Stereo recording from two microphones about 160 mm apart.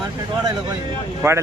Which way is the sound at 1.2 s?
15° right (ahead or behind).